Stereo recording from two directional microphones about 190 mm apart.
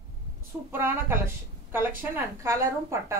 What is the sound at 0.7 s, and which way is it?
Speech, 10° right (ahead or behind).